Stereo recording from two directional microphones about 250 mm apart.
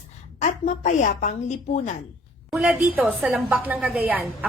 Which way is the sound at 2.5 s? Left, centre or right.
Centre.